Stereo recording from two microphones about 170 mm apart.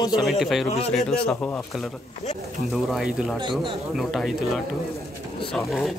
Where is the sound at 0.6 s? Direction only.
40° left (ahead or behind).